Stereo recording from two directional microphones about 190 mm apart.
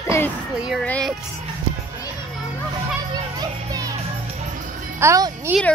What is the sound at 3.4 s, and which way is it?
Music, 20° right (ahead or behind).